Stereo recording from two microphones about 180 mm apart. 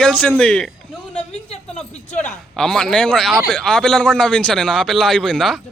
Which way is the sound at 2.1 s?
40° left (ahead or behind).